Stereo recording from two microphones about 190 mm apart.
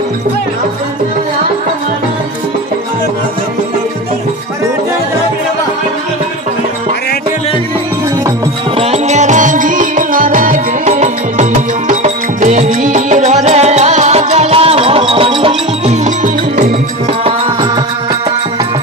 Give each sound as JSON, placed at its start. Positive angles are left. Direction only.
{"t": 8.7, "sound": "music", "side_deg": -30}